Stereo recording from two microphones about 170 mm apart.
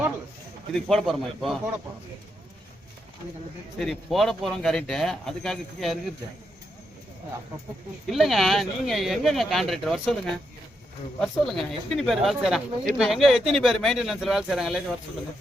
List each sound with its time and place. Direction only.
0.7 s speech: centre (ahead or behind)
3.8 s speech: centre (ahead or behind)
8.1 s speech: centre (ahead or behind)